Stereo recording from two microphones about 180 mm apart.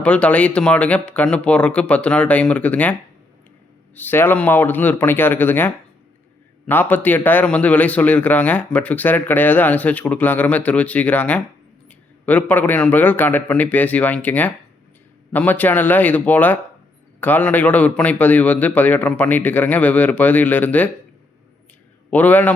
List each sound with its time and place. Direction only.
0.0 s speech: 5° left (ahead or behind)
3.9 s speech: 10° left (ahead or behind)
22.1 s speech: 10° left (ahead or behind)